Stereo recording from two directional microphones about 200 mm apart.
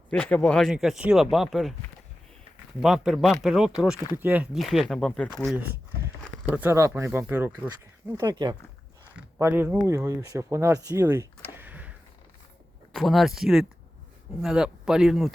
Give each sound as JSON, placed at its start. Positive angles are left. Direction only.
{"t": 0.1, "sound": "speech", "side_deg": 5}
{"t": 2.8, "sound": "speech", "side_deg": 0}
{"t": 6.5, "sound": "speech", "side_deg": -10}
{"t": 11.5, "sound": "a sound", "side_deg": -10}
{"t": 12.9, "sound": "speech", "side_deg": 0}